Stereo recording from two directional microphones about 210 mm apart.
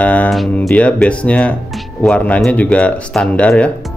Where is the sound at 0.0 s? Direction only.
5° left (ahead or behind).